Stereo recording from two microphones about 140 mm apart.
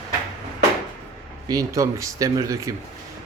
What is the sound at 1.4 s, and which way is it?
Speech, 25° right (ahead or behind).